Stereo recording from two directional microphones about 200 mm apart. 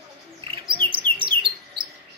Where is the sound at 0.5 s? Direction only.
25° right (ahead or behind).